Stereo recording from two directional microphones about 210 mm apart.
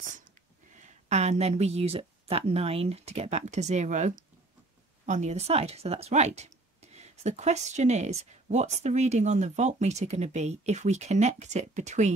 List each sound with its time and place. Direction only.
0.7 s speech: 35° right (ahead or behind)